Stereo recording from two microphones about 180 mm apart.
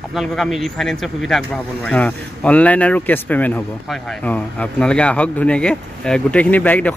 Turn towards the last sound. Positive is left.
turn(degrees=10)  # may be behind; listen again after turning